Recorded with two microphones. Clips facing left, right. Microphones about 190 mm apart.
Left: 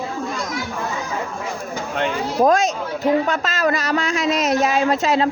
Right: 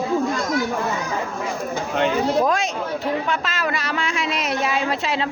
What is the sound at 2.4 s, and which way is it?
Speech, 45° left (ahead or behind).